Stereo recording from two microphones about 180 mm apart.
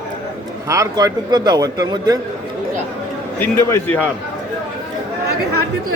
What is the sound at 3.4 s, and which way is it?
Speech, 15° left (ahead or behind).